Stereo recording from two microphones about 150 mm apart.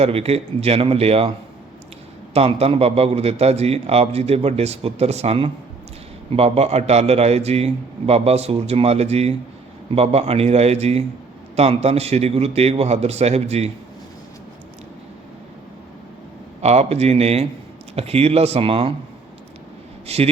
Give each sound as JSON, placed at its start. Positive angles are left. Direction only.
{"t": 0.0, "sound": "a man's voice", "side_deg": -45}
{"t": 2.3, "sound": "a man's voice", "side_deg": -40}
{"t": 16.6, "sound": "a man's voice", "side_deg": -45}
{"t": 20.1, "sound": "a man's voice", "side_deg": -45}